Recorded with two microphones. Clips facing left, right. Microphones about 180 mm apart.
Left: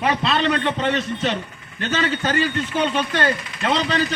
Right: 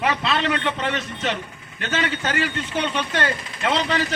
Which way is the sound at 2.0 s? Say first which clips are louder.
Left 3 dB; 35° left (ahead or behind).